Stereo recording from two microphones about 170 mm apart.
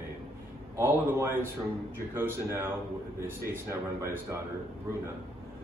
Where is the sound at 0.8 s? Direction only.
15° right (ahead or behind).